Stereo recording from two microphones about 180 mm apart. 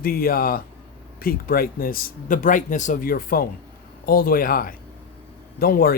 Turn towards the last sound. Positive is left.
turn(degrees=55)  # may be behind; listen again after turning